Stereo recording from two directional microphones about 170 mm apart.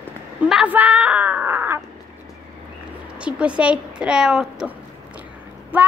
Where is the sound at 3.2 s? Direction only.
5° right (ahead or behind).